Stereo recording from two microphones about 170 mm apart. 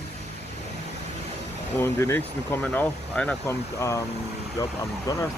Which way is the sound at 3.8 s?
20° left (ahead or behind).